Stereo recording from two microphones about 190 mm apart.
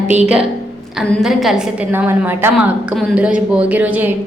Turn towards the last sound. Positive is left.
turn(degrees=-10)  # may be behind; listen again after turning